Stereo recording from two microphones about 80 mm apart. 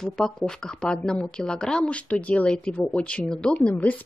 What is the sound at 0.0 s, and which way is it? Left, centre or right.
A woman's voice, centre.